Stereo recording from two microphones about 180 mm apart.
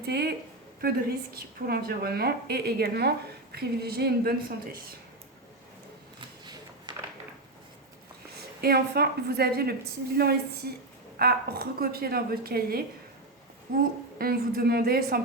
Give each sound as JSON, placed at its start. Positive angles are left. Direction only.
{"t": 0.0, "sound": "a woman's voice", "side_deg": -60}
{"t": 6.1, "sound": "a sound", "side_deg": -25}
{"t": 8.6, "sound": "a woman's voice", "side_deg": -60}